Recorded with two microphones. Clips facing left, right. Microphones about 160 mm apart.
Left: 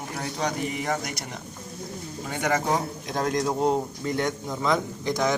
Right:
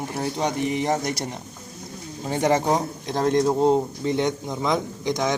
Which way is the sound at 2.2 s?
30° right (ahead or behind).